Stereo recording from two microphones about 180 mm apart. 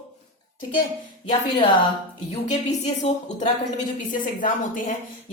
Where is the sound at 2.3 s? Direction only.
40° left (ahead or behind).